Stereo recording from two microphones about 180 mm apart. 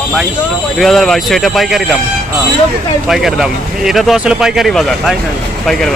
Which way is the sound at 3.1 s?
Centre (ahead or behind).